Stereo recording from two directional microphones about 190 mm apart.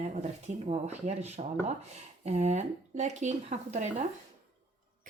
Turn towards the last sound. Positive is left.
turn(degrees=-40)  # may be behind; listen again after turning